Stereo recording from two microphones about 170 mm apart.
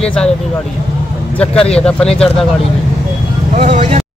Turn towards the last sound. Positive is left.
turn(degrees=-40)  # may be behind; listen again after turning